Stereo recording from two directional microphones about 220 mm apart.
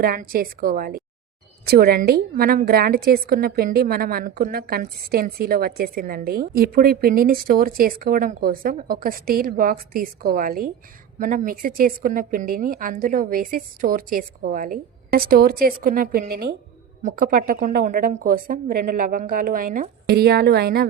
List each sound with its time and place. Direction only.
0.0 s a woman's voice: 40° right (ahead or behind)